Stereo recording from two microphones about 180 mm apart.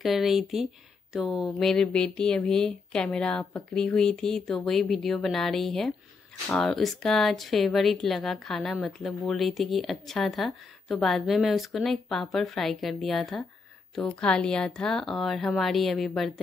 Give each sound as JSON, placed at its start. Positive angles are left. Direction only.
{"t": 0.0, "sound": "speech", "side_deg": 0}